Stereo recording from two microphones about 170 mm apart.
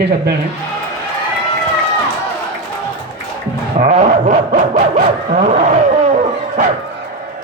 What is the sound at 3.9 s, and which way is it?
Dog, 40° right (ahead or behind).